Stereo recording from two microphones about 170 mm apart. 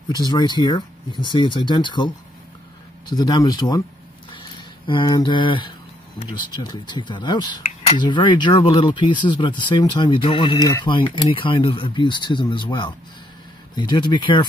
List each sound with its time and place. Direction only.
0.1 s speech: 25° left (ahead or behind)
4.3 s a sound: 30° left (ahead or behind)
6.5 s speech: 25° left (ahead or behind)